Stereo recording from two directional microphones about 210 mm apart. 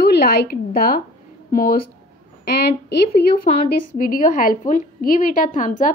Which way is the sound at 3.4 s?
40° left (ahead or behind).